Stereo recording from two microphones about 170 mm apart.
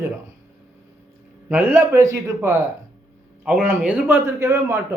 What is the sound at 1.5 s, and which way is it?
Speech, 10° right (ahead or behind).